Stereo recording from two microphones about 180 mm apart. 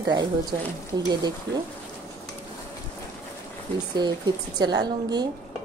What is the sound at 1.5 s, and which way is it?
Speech, 80° right.